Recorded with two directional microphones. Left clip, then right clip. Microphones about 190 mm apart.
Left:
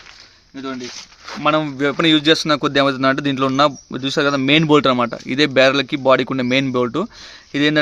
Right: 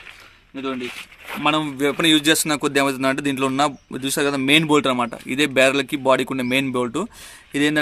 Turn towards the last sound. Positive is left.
turn(degrees=40)  # may be behind; listen again after turning